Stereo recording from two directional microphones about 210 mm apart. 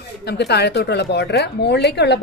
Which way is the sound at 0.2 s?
50° left (ahead or behind).